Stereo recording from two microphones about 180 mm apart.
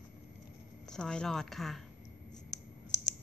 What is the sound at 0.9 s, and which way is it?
Speech, 5° left (ahead or behind).